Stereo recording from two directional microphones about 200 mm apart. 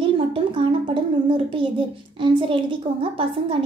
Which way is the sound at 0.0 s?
25° right (ahead or behind).